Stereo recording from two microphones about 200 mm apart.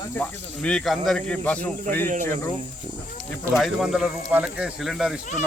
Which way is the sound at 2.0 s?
40° right (ahead or behind).